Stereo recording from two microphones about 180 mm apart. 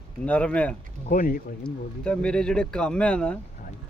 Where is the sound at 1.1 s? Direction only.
50° left (ahead or behind).